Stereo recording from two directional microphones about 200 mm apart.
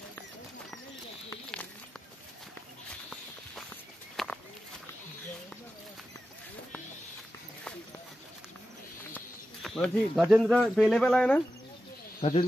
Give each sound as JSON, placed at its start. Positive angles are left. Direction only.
{"t": 1.3, "sound": "a sound", "side_deg": 5}
{"t": 4.2, "sound": "walk", "side_deg": 0}
{"t": 9.1, "sound": "speech", "side_deg": 5}
{"t": 12.2, "sound": "speech", "side_deg": 30}